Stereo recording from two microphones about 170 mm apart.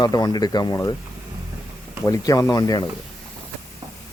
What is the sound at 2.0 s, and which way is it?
Speech, 20° left (ahead or behind).